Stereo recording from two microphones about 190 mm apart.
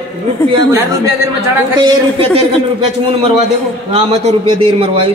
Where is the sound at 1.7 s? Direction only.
25° right (ahead or behind).